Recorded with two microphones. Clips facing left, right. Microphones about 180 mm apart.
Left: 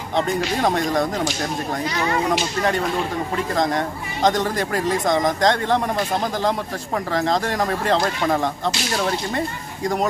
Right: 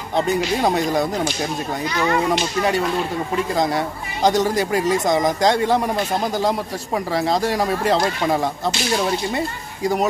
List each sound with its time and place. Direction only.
0.6 s speech: 10° right (ahead or behind)
3.5 s speech: 10° right (ahead or behind)
7.1 s speech: 10° right (ahead or behind)